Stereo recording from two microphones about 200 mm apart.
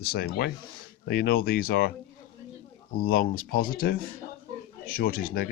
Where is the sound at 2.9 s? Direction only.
45° left (ahead or behind).